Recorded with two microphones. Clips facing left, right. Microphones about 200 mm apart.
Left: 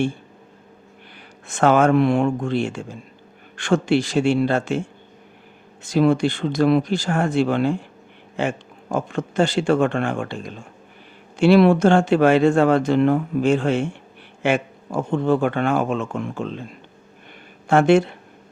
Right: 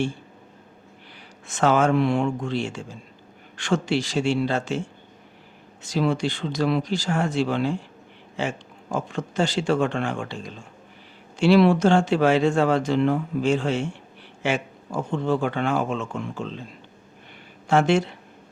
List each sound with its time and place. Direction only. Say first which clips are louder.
1.5 s speech: left 4 dB; 55° left (ahead or behind)
5.8 s speech: left 6 dB; 55° left (ahead or behind)
17.7 s speech: left 5 dB; 55° left (ahead or behind)